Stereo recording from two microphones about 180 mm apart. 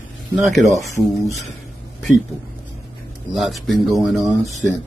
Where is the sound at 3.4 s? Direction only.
Centre (ahead or behind).